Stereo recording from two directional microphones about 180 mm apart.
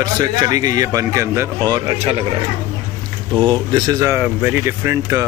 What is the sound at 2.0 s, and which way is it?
Speech, 35° right (ahead or behind).